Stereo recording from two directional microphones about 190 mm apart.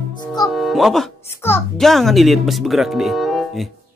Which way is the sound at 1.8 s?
Centre (ahead or behind).